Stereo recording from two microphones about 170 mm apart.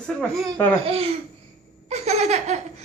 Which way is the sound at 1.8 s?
40° right (ahead or behind).